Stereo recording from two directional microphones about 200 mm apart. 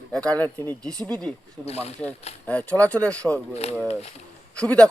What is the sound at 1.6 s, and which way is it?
Speech, 30° left (ahead or behind).